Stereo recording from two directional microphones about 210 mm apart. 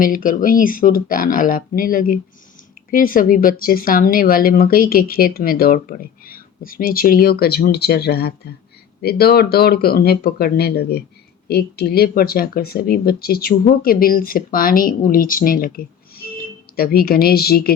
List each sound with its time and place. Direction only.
0.0 s speech: 40° left (ahead or behind)